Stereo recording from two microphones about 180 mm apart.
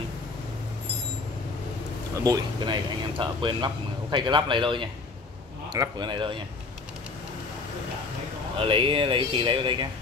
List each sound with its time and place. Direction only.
2.2 s speech: 20° right (ahead or behind)
8.5 s speech: 30° right (ahead or behind)